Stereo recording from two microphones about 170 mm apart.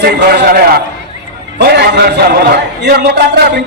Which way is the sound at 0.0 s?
75° right (ahead or behind).